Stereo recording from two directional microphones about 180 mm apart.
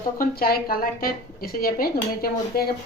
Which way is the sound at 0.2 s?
55° left (ahead or behind).